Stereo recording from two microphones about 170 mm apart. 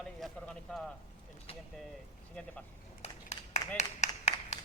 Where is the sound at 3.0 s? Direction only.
40° left (ahead or behind).